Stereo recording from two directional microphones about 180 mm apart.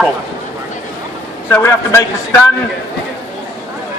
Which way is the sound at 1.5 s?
15° left (ahead or behind).